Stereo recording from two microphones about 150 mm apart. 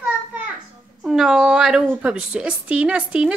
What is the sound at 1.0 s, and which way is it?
A woman's voice, centre (ahead or behind).